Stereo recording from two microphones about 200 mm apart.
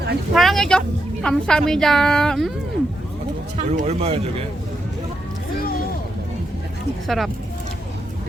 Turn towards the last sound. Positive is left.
turn(degrees=0)  # may be behind; listen again after turning